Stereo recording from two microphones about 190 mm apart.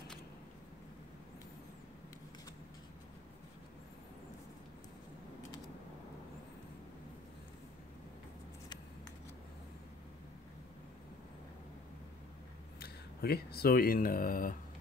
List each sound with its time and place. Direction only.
12.7 s speech: 55° left (ahead or behind)